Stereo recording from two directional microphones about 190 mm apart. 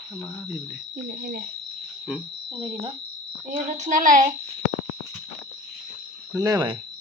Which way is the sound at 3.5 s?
40° right (ahead or behind).